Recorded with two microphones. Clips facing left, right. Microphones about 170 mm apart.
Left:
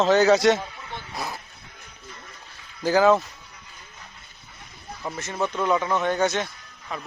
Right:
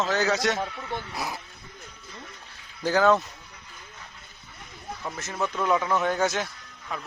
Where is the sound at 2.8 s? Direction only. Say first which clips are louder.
Left 3 dB; 5° left (ahead or behind).